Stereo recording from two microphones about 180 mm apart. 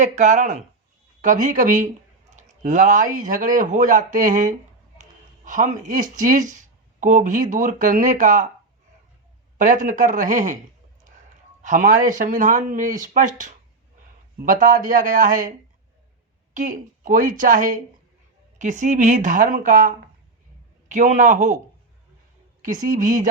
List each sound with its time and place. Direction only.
0.0 s speech: 45° right (ahead or behind)
9.6 s speech: 45° right (ahead or behind)
11.6 s speech: 45° right (ahead or behind)
14.5 s speech: 50° right (ahead or behind)
16.6 s speech: 45° right (ahead or behind)
22.6 s speech: 45° right (ahead or behind)